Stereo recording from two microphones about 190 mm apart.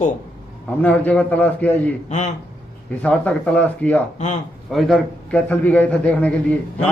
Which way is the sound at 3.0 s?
10° left (ahead or behind).